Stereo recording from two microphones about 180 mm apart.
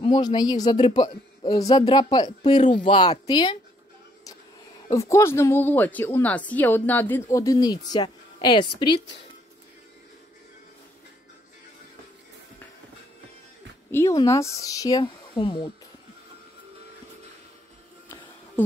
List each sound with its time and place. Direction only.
0.0 s speech: 25° left (ahead or behind)
13.9 s a woman's voice: 15° left (ahead or behind)